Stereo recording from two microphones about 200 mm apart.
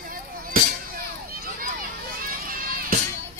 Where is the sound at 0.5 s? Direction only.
45° right (ahead or behind).